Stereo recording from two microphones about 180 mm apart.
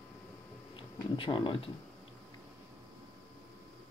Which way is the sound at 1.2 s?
25° left (ahead or behind).